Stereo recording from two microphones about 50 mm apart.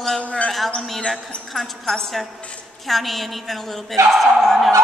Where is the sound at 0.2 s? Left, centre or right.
Left.